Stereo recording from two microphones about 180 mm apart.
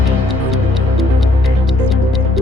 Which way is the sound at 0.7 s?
Centre (ahead or behind).